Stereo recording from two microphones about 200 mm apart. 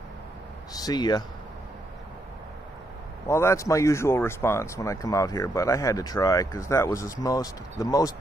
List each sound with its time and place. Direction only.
0.7 s speech: 20° left (ahead or behind)
3.3 s speech: 15° left (ahead or behind)